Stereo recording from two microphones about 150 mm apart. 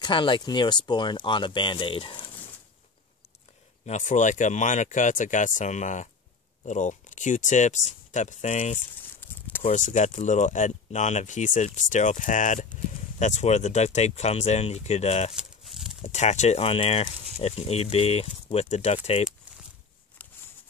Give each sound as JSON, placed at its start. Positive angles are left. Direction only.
{"t": 0.0, "sound": "speech", "side_deg": 35}
{"t": 3.8, "sound": "speech", "side_deg": 55}
{"t": 9.2, "sound": "a sound", "side_deg": 10}
{"t": 9.6, "sound": "speech", "side_deg": 50}
{"t": 15.3, "sound": "livestock", "side_deg": 0}
{"t": 16.0, "sound": "speech", "side_deg": 50}